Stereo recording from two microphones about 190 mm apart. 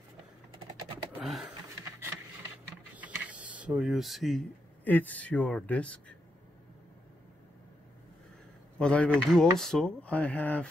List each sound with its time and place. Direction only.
1.1 s a sound: 5° right (ahead or behind)
3.0 s speech: 5° right (ahead or behind)
8.7 s speech: 5° left (ahead or behind)